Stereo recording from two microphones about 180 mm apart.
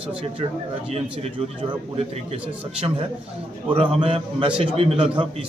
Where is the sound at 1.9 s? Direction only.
35° right (ahead or behind).